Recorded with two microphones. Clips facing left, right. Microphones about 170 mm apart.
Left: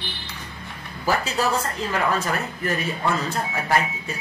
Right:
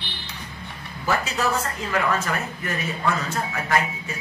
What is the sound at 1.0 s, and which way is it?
Speech, 35° left (ahead or behind).